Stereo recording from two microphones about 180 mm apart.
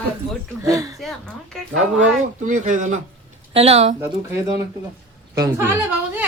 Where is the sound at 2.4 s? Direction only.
45° right (ahead or behind).